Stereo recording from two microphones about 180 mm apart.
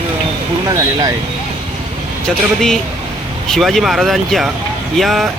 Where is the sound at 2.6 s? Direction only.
5° left (ahead or behind).